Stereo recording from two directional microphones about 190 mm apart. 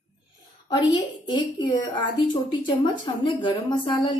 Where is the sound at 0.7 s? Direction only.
25° left (ahead or behind).